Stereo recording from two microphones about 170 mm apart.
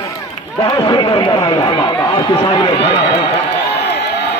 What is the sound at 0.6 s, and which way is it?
A man's voice, 25° left (ahead or behind).